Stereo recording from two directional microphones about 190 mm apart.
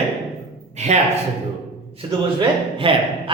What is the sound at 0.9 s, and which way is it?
Speech, 35° right (ahead or behind).